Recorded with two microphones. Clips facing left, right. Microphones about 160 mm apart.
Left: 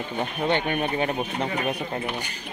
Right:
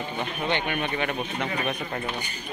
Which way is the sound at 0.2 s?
40° left (ahead or behind).